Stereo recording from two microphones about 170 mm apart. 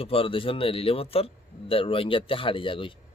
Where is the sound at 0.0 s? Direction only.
35° left (ahead or behind).